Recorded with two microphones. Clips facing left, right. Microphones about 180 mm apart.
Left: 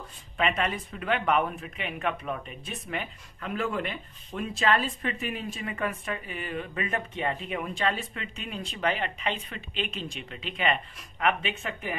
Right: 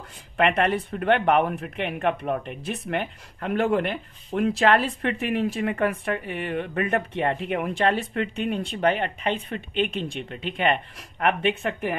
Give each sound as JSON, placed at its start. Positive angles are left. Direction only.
{"t": 0.4, "sound": "speech", "side_deg": -65}
{"t": 2.4, "sound": "speech", "side_deg": -70}